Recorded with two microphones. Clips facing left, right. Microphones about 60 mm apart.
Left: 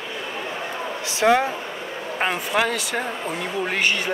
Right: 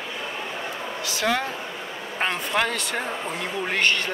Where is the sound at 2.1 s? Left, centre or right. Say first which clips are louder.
Left 2 dB; centre.